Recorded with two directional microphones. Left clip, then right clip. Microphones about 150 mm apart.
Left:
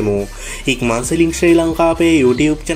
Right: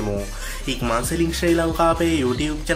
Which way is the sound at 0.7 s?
20° left (ahead or behind).